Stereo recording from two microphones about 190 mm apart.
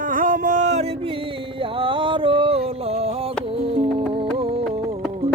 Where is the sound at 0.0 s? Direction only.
45° right (ahead or behind).